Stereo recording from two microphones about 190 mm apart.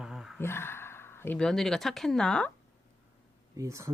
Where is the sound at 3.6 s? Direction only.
15° right (ahead or behind).